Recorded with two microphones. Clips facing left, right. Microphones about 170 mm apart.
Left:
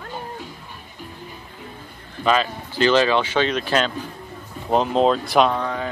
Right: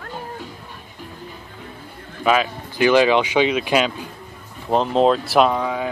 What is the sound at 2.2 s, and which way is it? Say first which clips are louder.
Speech: right 1 dB; 10° right (ahead or behind).